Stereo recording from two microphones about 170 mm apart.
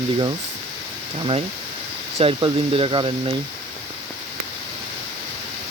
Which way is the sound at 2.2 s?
35° right (ahead or behind).